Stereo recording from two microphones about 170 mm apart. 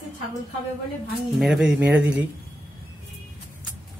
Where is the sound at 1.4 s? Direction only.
5° right (ahead or behind).